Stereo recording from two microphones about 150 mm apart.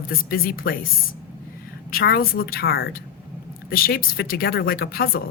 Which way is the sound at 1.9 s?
80° left.